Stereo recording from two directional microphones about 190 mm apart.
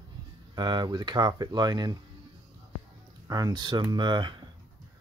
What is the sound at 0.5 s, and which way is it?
Speech, 20° right (ahead or behind).